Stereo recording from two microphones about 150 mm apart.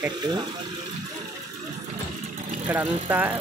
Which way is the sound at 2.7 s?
10° right (ahead or behind).